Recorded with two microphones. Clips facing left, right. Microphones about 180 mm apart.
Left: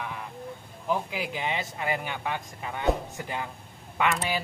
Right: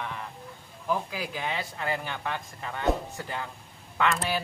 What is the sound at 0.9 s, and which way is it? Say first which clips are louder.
Speech: left 1 dB; 20° left (ahead or behind).